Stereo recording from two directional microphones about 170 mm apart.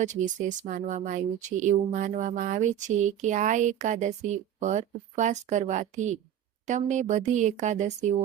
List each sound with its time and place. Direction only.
0.0 s speech: 45° right (ahead or behind)